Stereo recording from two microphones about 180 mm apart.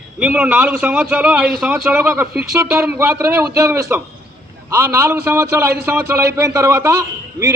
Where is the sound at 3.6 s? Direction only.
20° right (ahead or behind).